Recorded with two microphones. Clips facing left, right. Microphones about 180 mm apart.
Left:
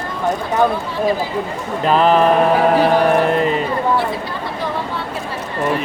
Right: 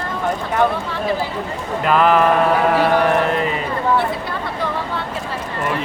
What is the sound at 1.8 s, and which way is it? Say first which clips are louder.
Speech: left 1 dB; 25° left (ahead or behind).